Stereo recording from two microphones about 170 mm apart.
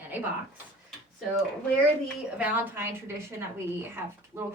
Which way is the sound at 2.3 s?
10° right (ahead or behind).